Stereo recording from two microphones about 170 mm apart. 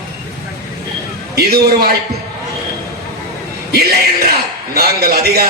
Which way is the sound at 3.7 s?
70° right (ahead or behind).